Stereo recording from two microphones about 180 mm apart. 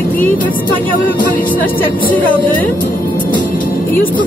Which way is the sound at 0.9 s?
50° left (ahead or behind).